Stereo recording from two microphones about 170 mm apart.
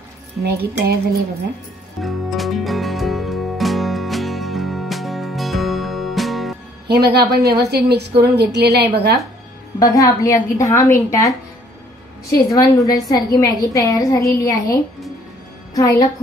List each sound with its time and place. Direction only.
0.4 s a woman's voice: 65° right (ahead or behind)
2.0 s music: centre (ahead or behind)
6.9 s a woman's voice: 75° right (ahead or behind)
9.8 s a woman's voice: 20° left (ahead or behind)
12.4 s a woman's voice: 20° left (ahead or behind)